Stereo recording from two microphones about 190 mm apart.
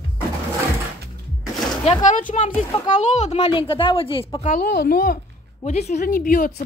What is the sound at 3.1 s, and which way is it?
Speech, 35° left (ahead or behind).